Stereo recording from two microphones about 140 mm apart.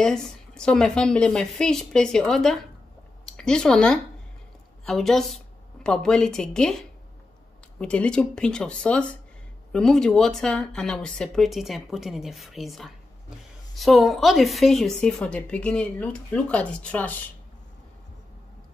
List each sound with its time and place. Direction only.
0.0 s speech: 5° left (ahead or behind)
7.8 s a woman's voice: 5° left (ahead or behind)